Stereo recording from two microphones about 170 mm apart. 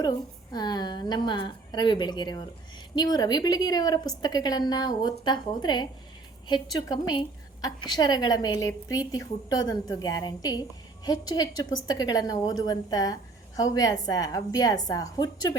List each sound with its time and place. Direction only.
0.5 s a woman's voice: 25° left (ahead or behind)